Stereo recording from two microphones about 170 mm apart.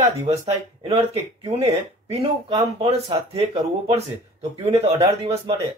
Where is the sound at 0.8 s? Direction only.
35° right (ahead or behind).